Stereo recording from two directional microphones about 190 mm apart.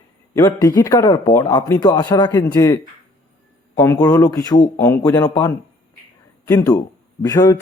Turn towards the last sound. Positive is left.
turn(degrees=20)  # may be behind; listen again after turning